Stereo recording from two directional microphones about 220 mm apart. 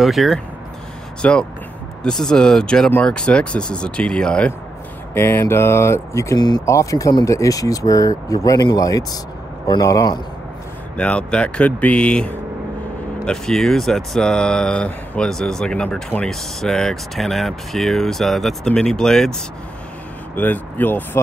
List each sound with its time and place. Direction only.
0.0 s speech: centre (ahead or behind); by 10.1 s 15° left (ahead or behind)
11.0 s speech: 5° left (ahead or behind)
20.3 s speech: 10° left (ahead or behind)